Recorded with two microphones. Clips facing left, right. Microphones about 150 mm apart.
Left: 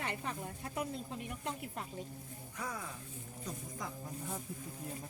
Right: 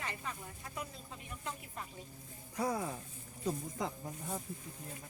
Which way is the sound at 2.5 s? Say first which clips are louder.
Right 8 dB; 35° right (ahead or behind).